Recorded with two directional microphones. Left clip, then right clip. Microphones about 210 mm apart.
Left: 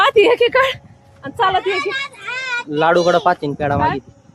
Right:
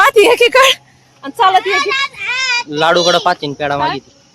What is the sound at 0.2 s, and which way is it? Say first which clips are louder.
A woman's voice: right 4 dB; 40° right (ahead or behind).